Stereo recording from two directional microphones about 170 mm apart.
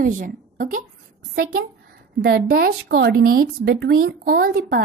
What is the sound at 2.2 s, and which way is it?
Speech, 65° right (ahead or behind).